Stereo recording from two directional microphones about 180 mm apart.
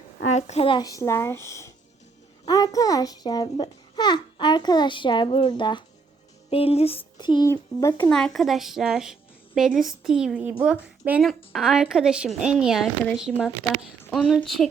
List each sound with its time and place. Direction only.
0.3 s a child's voice: 40° left (ahead or behind); by 8.1 s 20° left (ahead or behind)
8.1 s a woman's voice: centre (ahead or behind)